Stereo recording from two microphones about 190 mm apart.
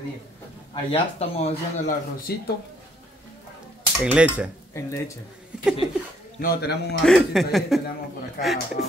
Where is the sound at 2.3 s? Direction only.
55° left (ahead or behind).